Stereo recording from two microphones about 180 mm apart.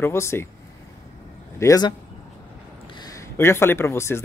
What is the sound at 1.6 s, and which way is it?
Speech, 20° left (ahead or behind).